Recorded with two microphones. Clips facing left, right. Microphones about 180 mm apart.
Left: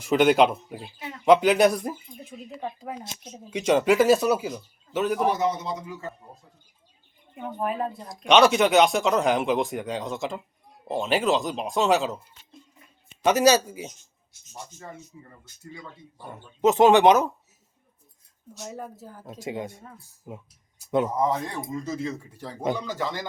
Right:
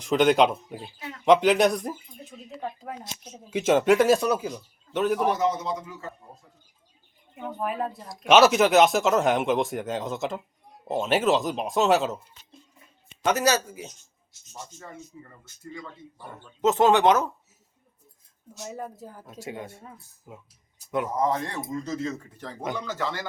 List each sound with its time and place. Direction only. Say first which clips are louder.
0.0 s speech: left 1 dB; 5° left (ahead or behind)
7.3 s speech: left 1 dB; centre (ahead or behind)
13.2 s speech: left 4 dB; 15° left (ahead or behind)
15.7 s speech: right 3 dB; 15° left (ahead or behind)
18.6 s speech: right 1 dB; centre (ahead or behind)
18.9 s speech: right 1 dB; 15° right (ahead or behind)
19.4 s speech: left 4 dB; 15° left (ahead or behind)
21.2 s speech: even; 5° left (ahead or behind)